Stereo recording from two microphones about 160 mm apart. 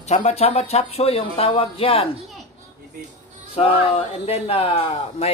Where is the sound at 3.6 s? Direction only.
40° left (ahead or behind).